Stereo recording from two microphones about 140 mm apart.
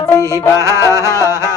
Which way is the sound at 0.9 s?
20° right (ahead or behind).